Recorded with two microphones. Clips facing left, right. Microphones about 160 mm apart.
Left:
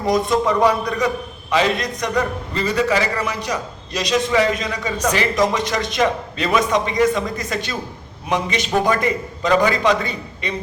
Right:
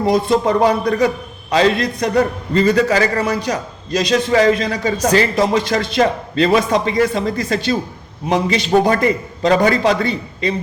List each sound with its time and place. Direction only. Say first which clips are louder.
0.0 s a man's voice: right 3 dB; 30° right (ahead or behind)